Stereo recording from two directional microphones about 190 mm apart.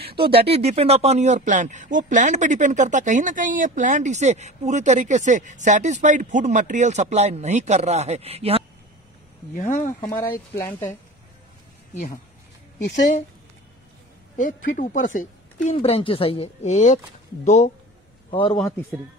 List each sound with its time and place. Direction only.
0.0 s a sound: 30° right (ahead or behind)
0.5 s a man's voice: 30° right (ahead or behind)
9.5 s speech: 40° left (ahead or behind)
10.0 s speech: 15° left (ahead or behind)
11.9 s speech: 45° left (ahead or behind)
14.3 s speech: 45° left (ahead or behind)
18.3 s a man's voice: 25° left (ahead or behind)